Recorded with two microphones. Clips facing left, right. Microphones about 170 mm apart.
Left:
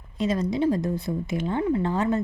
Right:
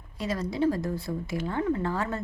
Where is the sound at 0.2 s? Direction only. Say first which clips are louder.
Left 4 dB; 20° left (ahead or behind).